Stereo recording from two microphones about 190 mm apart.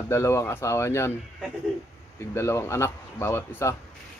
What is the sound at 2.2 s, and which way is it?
Speech, 15° left (ahead or behind).